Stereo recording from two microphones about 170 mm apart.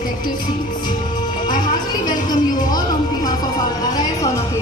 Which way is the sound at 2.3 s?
25° left (ahead or behind).